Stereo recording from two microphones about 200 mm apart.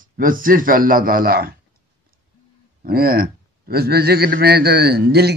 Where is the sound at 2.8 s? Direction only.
50° right (ahead or behind).